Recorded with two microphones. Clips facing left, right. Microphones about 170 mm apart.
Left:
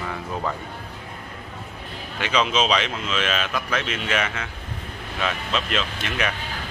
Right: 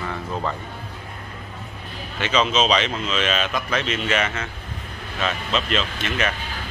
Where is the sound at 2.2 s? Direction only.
10° left (ahead or behind).